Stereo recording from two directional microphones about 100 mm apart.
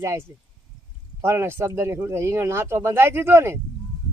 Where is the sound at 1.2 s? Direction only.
25° right (ahead or behind).